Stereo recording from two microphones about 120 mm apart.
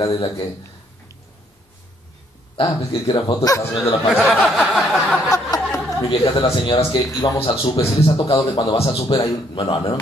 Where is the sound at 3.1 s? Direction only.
30° left (ahead or behind).